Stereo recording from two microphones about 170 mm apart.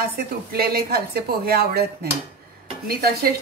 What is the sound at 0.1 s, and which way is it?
A woman's voice, 65° right (ahead or behind).